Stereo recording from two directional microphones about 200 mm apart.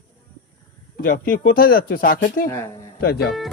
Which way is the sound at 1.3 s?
50° left (ahead or behind).